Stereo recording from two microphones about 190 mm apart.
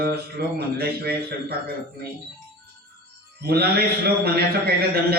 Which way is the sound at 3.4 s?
55° right (ahead or behind).